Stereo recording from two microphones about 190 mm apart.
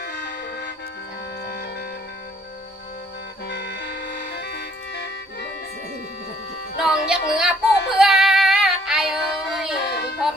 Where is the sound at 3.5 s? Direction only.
60° left (ahead or behind).